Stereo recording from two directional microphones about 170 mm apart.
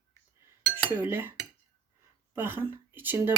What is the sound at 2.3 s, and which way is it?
Speech, 15° right (ahead or behind).